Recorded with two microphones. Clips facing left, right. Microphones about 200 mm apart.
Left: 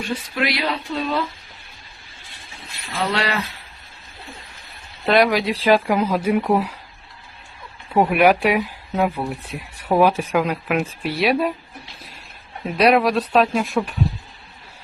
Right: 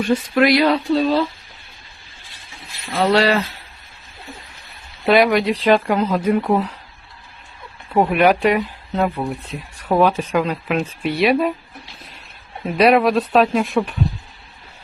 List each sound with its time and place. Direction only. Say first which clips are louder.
0.3 s speech: right 9 dB; 45° right (ahead or behind)
2.9 s speech: right 7 dB; 40° right (ahead or behind)
5.0 s speech: right 2 dB; centre (ahead or behind)
7.9 s speech: even; centre (ahead or behind)
12.6 s speech: right 2 dB; centre (ahead or behind)